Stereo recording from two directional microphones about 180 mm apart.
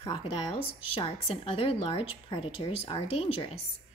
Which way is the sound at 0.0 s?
30° left (ahead or behind).